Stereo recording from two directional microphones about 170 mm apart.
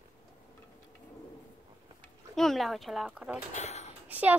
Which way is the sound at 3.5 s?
40° left (ahead or behind).